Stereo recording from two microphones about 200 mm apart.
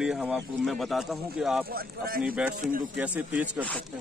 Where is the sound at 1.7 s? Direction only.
50° right (ahead or behind).